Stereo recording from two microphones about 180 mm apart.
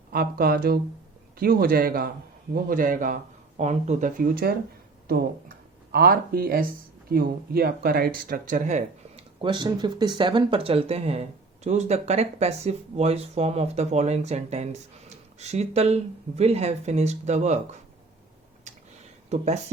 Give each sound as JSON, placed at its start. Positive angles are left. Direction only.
{"t": 0.1, "sound": "speech", "side_deg": -55}
{"t": 9.4, "sound": "speech", "side_deg": -25}
{"t": 18.7, "sound": "a sound", "side_deg": -40}
{"t": 19.3, "sound": "speech", "side_deg": -40}